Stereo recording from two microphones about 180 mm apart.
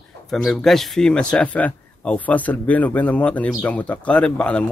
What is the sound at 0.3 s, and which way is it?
Speech, centre (ahead or behind).